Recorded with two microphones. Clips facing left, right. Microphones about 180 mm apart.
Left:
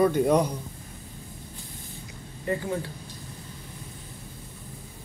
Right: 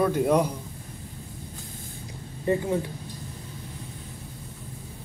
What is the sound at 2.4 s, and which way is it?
Speech, 20° right (ahead or behind).